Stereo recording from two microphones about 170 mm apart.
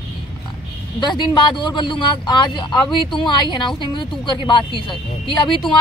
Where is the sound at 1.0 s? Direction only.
25° left (ahead or behind).